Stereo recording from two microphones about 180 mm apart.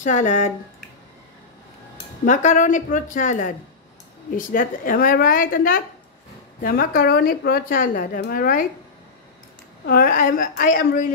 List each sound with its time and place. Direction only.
0.0 s speech: 40° left (ahead or behind)
2.2 s a woman's voice: 45° left (ahead or behind)
9.8 s a woman's voice: 50° left (ahead or behind)